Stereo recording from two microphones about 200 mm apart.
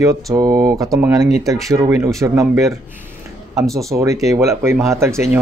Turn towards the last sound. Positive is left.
turn(degrees=-15)  # may be behind; listen again after turning